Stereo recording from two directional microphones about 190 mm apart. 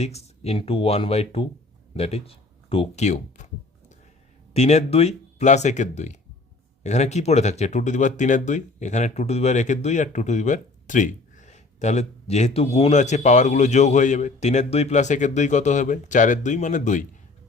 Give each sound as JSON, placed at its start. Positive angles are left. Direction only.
{"t": 0.0, "sound": "speech", "side_deg": 35}
{"t": 1.9, "sound": "a sound", "side_deg": 30}
{"t": 4.5, "sound": "speech", "side_deg": 35}